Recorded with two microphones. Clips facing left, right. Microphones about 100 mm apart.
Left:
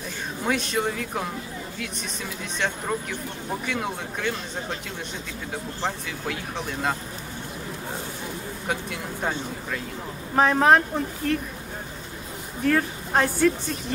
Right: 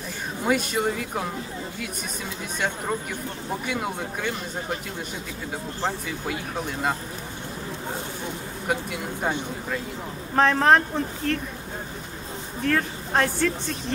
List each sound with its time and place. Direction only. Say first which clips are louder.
0.4 s speech: right 2 dB; 5° right (ahead or behind)
2.6 s speech: even; 5° right (ahead or behind)
5.9 s speech: right 2 dB; 5° right (ahead or behind)
8.6 s speech: right 3 dB; 5° right (ahead or behind)
10.3 s a woman's voice: even; 5° left (ahead or behind)
12.6 s a woman's voice: left 2 dB; 5° left (ahead or behind)